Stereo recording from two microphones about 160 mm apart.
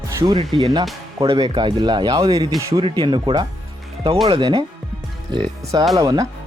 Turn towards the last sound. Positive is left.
turn(degrees=-25)  # may be behind; listen again after turning